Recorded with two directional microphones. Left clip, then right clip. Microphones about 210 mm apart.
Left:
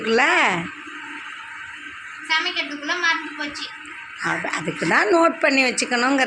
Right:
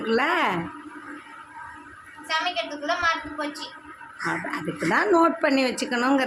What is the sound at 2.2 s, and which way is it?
A woman's voice, 20° right (ahead or behind).